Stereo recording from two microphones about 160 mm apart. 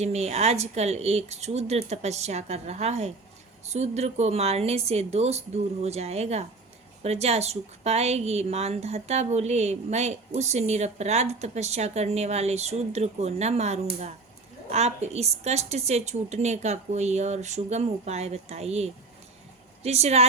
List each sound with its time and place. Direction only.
0.0 s a woman's voice: 45° right (ahead or behind)